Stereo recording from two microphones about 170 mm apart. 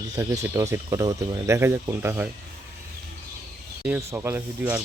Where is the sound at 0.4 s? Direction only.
15° right (ahead or behind).